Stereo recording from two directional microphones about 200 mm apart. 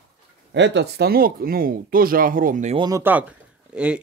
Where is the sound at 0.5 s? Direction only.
60° right (ahead or behind); by 2.7 s 40° right (ahead or behind).